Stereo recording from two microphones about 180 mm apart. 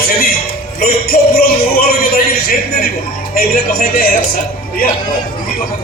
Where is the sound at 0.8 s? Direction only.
55° left (ahead or behind).